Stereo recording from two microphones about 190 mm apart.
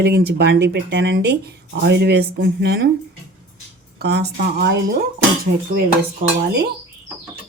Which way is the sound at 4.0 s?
60° right (ahead or behind).